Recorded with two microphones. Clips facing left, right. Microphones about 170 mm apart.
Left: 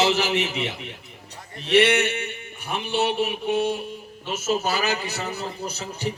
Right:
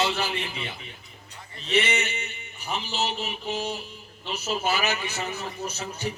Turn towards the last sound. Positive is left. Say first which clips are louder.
# left 2 dB
turn(degrees=35)  # may be behind; listen again after turning